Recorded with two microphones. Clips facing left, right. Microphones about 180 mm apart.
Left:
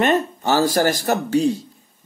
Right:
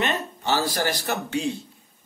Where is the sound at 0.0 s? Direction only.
45° left (ahead or behind).